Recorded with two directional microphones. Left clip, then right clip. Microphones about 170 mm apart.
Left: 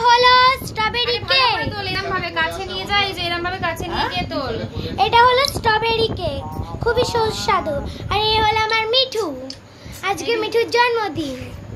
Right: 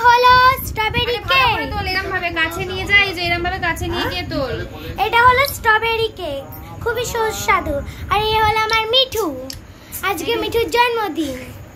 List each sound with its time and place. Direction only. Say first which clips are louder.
0.0 s child singing: right 2 dB; 5° right (ahead or behind)
1.9 s a sound: right 4 dB; 10° left (ahead or behind)
2.9 s a woman's voice: right 5 dB; 25° left (ahead or behind)
4.9 s a child's voice: right 1 dB; centre (ahead or behind)